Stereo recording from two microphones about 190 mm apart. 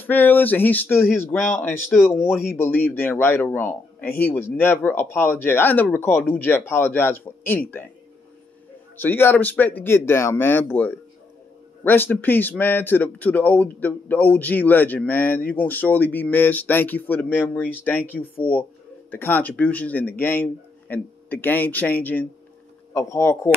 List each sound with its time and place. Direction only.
0.0 s a man's voice: 10° left (ahead or behind)
8.9 s a man's voice: 10° left (ahead or behind)